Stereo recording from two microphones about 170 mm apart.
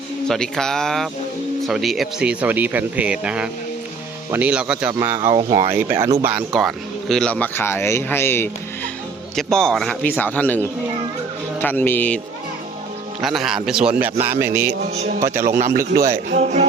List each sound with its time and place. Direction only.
0.3 s a man's voice: 5° left (ahead or behind)
9.3 s speech: 5° left (ahead or behind)
13.2 s a man's voice: centre (ahead or behind)
14.9 s a man's voice: 40° right (ahead or behind)
15.4 s a man's voice: 55° right (ahead or behind)
16.4 s a man's voice: 40° right (ahead or behind)